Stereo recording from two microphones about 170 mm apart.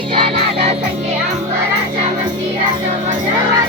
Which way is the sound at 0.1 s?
30° right (ahead or behind).